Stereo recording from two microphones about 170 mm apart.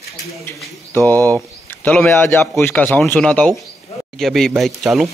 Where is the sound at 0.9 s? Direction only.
10° left (ahead or behind).